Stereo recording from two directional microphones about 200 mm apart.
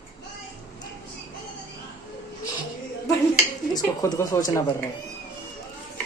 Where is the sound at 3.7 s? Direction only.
15° left (ahead or behind).